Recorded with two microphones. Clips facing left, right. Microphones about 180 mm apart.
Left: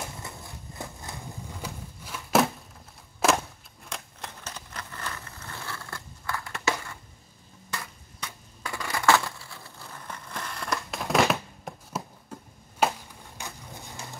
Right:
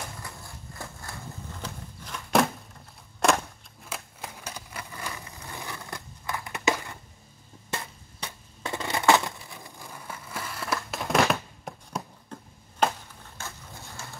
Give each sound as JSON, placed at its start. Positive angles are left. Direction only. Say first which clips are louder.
{"t": 0.2, "sound": "horse", "louder": "left 1 dB", "side_deg": 20}
{"t": 3.2, "sound": "a sound", "louder": "even", "side_deg": 5}
{"t": 7.7, "sound": "crushing", "louder": "right 3 dB", "side_deg": -25}
{"t": 13.4, "sound": "dog", "louder": "left 1 dB", "side_deg": 15}